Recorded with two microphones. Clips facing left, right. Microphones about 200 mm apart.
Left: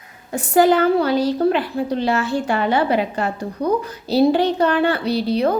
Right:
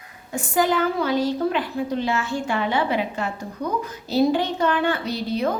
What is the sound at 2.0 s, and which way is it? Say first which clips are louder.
Speech: left 5 dB; 70° left (ahead or behind).